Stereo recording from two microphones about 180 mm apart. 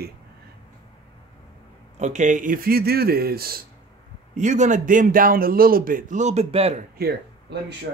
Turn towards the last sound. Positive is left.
turn(degrees=-60)  # may be behind; listen again after turning